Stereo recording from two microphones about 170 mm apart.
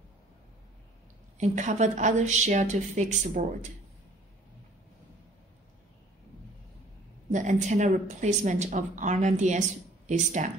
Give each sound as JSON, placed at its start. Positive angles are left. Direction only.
{"t": 1.4, "sound": "speech", "side_deg": -45}
{"t": 7.2, "sound": "speech", "side_deg": -45}